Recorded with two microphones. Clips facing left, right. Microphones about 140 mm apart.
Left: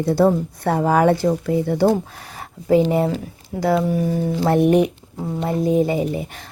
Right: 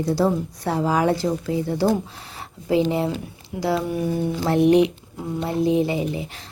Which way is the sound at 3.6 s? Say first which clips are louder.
Left 4 dB; 40° left (ahead or behind).